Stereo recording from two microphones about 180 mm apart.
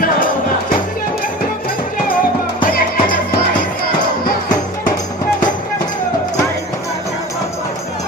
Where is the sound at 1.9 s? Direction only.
55° left (ahead or behind).